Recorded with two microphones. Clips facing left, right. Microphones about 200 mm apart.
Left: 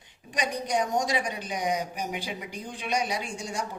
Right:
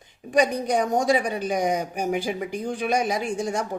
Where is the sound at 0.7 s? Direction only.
55° right (ahead or behind).